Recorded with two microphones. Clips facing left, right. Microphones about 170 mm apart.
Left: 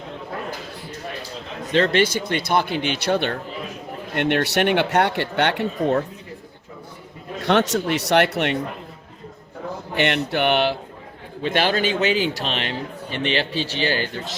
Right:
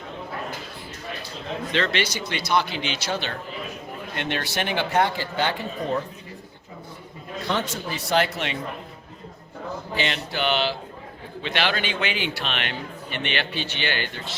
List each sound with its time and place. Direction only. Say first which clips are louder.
1.7 s speech: left 8 dB; 50° left (ahead or behind); by 6.0 s 70° left (ahead or behind)
7.4 s speech: left 9 dB; 80° left; by 8.5 s 65° left (ahead or behind)
9.9 s speech: left 7 dB; 60° left (ahead or behind)
11.4 s a man's voice: left 6 dB; 45° left (ahead or behind)